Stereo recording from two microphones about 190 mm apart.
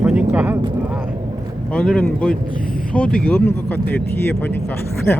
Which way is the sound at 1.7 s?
5° left (ahead or behind).